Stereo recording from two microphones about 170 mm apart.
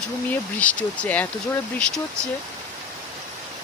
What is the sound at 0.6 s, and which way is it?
Speech, 5° left (ahead or behind).